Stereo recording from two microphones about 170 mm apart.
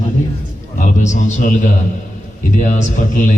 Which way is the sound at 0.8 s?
45° left (ahead or behind).